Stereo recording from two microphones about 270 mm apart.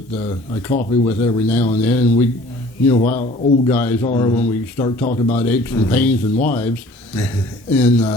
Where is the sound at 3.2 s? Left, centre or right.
Left.